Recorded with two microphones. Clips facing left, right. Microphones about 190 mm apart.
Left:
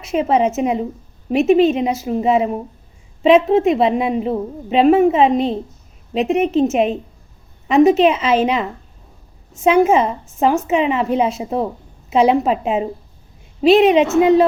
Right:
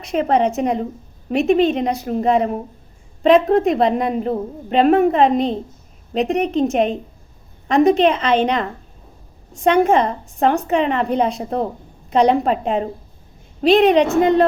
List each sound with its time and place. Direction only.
0.0 s a woman's voice: 5° left (ahead or behind)